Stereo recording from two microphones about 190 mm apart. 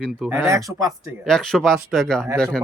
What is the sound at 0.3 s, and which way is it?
Speech, 15° right (ahead or behind).